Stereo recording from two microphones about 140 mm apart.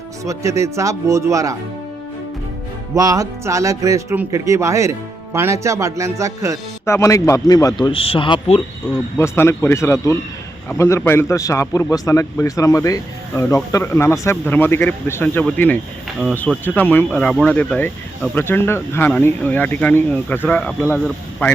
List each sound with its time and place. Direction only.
0.3 s speech: 20° right (ahead or behind)
2.9 s speech: 25° right (ahead or behind)
6.8 s speech: 20° left (ahead or behind); by 8.6 s 40° left (ahead or behind)
9.1 s speech: 20° left (ahead or behind)